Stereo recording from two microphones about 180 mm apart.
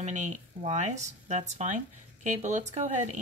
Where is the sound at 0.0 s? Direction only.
45° right (ahead or behind).